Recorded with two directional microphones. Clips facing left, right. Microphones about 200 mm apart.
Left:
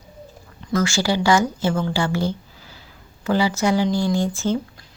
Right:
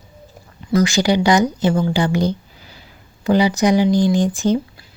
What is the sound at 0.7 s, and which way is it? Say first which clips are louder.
Speech: right 5 dB; 15° right (ahead or behind).